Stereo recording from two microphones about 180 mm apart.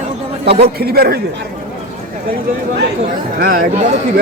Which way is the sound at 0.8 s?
60° right (ahead or behind).